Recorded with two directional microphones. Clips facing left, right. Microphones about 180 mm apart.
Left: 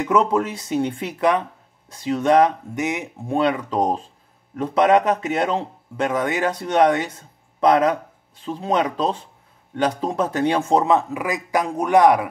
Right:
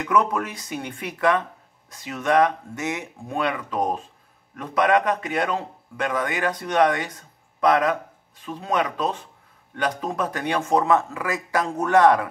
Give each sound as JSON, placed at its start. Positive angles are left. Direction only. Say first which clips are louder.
{"t": 0.0, "sound": "a man's voice", "louder": "left 4 dB", "side_deg": 25}